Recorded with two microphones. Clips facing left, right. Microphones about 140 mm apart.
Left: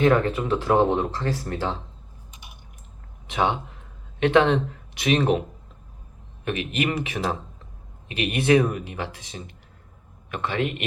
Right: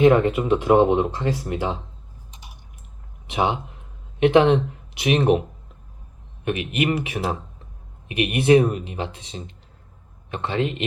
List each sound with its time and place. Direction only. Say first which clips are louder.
0.0 s speech: right 4 dB; 15° right (ahead or behind)
3.2 s speech: right 1 dB; 15° right (ahead or behind)
6.4 s speech: right 2 dB; 15° right (ahead or behind)